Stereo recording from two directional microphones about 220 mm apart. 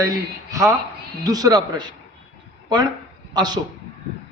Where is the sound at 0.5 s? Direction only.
15° right (ahead or behind).